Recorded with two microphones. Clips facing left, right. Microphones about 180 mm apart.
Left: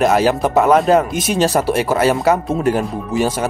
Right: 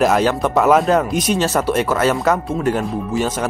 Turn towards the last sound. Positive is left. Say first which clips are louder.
# left 2 dB
turn(degrees=10)  # may be behind; listen again after turning